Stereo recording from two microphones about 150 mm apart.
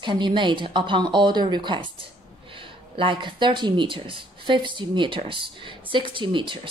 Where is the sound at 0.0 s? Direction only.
30° right (ahead or behind).